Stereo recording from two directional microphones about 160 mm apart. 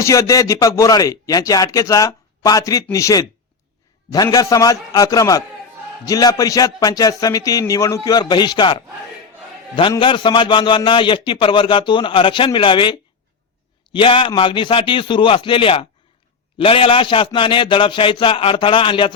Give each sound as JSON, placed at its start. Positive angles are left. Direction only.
{"t": 0.0, "sound": "a man's voice", "side_deg": 20}
{"t": 9.9, "sound": "a man's voice", "side_deg": 30}